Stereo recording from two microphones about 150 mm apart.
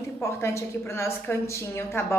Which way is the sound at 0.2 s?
20° left (ahead or behind).